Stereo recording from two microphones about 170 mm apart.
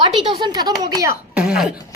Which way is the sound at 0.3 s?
25° right (ahead or behind).